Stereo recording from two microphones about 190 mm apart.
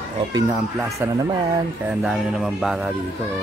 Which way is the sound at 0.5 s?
5° right (ahead or behind).